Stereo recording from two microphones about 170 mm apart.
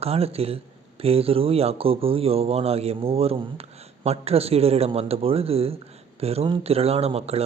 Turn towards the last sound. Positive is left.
turn(degrees=-35)  # may be behind; listen again after turning